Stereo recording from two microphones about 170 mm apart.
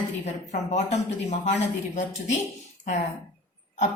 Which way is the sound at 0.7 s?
40° left (ahead or behind).